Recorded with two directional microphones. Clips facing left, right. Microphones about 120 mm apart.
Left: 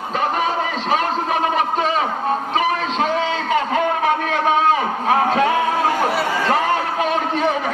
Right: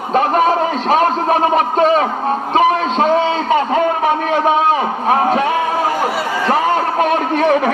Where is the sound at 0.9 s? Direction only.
45° right (ahead or behind).